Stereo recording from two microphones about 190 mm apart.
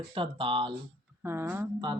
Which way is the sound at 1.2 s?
15° right (ahead or behind).